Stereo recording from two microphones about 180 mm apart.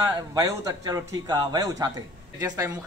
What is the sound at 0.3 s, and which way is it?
A man's voice, 20° right (ahead or behind).